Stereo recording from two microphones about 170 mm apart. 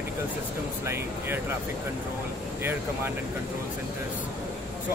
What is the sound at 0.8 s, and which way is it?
Speech, 15° right (ahead or behind).